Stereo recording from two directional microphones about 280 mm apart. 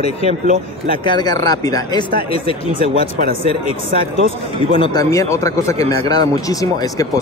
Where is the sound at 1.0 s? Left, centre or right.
Centre.